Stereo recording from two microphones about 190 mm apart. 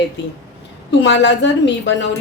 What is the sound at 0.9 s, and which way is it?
A woman's voice, 70° left (ahead or behind).